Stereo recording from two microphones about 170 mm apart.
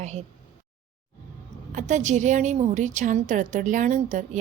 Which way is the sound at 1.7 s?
45° right (ahead or behind).